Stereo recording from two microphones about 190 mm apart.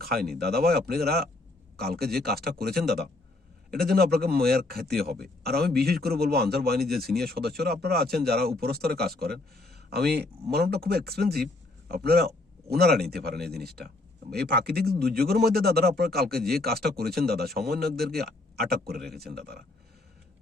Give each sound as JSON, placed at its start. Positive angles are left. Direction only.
{"t": 0.0, "sound": "a man's voice", "side_deg": -55}
{"t": 4.9, "sound": "speech", "side_deg": 0}
{"t": 5.4, "sound": "speech", "side_deg": -55}
{"t": 6.9, "sound": "speech", "side_deg": 0}
{"t": 7.2, "sound": "speech", "side_deg": -55}
{"t": 17.8, "sound": "speech", "side_deg": 0}
{"t": 19.4, "sound": "a man's voice", "side_deg": -55}